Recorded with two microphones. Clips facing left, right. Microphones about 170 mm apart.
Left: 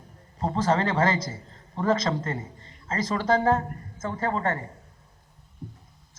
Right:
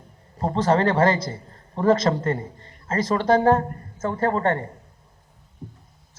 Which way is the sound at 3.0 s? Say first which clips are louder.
Right 5 dB; 60° right (ahead or behind).